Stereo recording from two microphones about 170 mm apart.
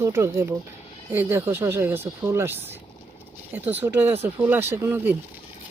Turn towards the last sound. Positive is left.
turn(degrees=-10)  # may be behind; listen again after turning